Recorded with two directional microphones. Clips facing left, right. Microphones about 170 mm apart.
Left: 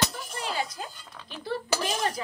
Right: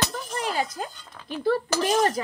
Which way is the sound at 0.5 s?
50° right (ahead or behind).